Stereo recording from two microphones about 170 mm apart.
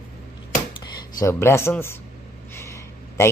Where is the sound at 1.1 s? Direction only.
15° left (ahead or behind).